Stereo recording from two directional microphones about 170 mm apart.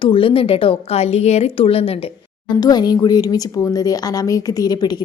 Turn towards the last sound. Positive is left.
turn(degrees=25)  # may be behind; listen again after turning